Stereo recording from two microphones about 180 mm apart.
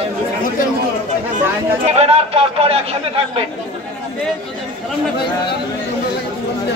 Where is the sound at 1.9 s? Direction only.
35° right (ahead or behind).